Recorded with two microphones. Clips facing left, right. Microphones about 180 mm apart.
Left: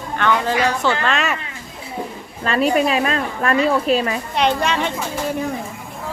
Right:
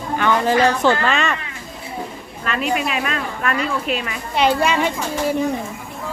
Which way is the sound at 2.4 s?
35° left (ahead or behind).